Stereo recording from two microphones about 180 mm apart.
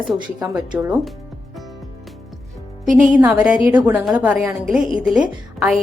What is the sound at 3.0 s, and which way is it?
A woman's voice, 10° right (ahead or behind).